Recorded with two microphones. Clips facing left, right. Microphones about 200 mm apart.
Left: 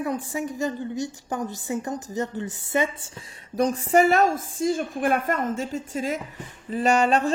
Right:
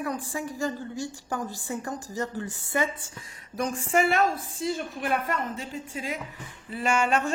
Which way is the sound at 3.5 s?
35° left (ahead or behind).